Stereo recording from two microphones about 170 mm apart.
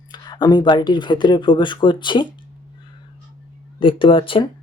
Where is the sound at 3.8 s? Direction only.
30° left (ahead or behind).